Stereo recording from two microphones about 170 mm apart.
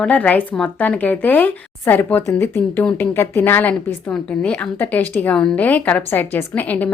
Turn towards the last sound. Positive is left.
turn(degrees=10)  # may be behind; listen again after turning